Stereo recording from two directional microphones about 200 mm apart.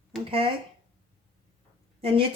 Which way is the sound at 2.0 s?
30° right (ahead or behind).